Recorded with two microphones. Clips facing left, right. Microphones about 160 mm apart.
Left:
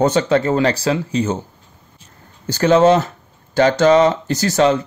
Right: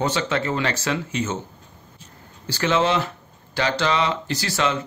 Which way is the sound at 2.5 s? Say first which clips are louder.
Left 9 dB; 40° left (ahead or behind).